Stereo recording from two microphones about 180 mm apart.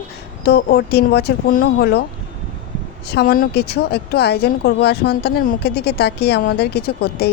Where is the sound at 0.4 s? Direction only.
65° left (ahead or behind).